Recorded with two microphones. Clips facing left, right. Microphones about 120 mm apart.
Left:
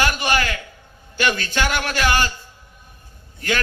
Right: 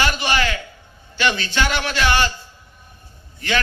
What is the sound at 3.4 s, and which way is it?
Speech, 45° left (ahead or behind).